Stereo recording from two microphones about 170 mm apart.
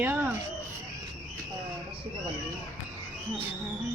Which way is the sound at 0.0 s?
10° right (ahead or behind).